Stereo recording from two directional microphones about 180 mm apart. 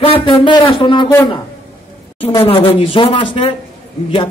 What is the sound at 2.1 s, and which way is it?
A man's voice, 30° left (ahead or behind).